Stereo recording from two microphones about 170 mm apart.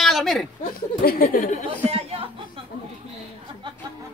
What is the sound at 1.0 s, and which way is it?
Speech, 60° left (ahead or behind).